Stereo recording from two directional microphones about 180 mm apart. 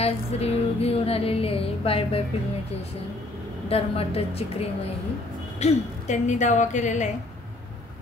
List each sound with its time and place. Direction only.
0.0 s music: 35° left (ahead or behind)
3.6 s music: 35° left (ahead or behind)